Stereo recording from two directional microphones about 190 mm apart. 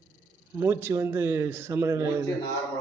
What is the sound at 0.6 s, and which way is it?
Speech, 15° right (ahead or behind).